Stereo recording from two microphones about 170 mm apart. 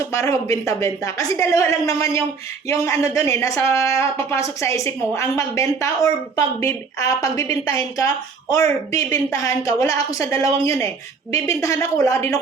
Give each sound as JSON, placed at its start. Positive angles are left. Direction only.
{"t": 0.0, "sound": "a woman's voice", "side_deg": 15}